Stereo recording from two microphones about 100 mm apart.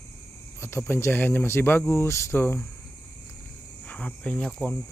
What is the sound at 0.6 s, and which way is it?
Speech, 25° left (ahead or behind).